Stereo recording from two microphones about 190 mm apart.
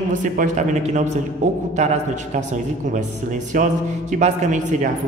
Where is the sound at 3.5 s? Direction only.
40° right (ahead or behind).